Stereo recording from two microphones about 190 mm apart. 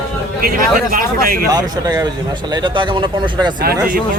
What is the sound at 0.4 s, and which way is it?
Speech, 50° right (ahead or behind).